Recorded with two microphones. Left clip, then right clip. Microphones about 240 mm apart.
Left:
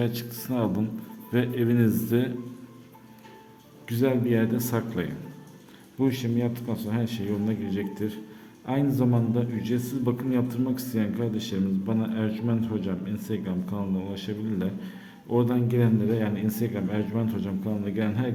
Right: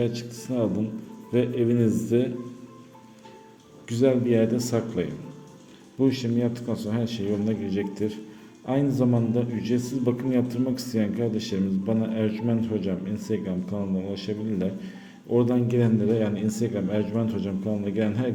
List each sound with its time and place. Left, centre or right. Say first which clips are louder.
0.0 s speech: right 2 dB; centre
3.8 s a man's voice: right 3 dB; centre